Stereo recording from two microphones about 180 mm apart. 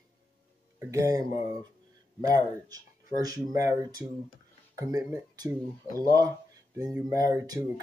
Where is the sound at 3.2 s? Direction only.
20° right (ahead or behind).